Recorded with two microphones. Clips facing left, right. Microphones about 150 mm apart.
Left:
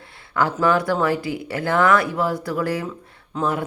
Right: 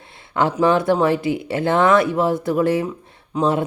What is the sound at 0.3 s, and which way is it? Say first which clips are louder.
Speech: right 3 dB; 20° right (ahead or behind).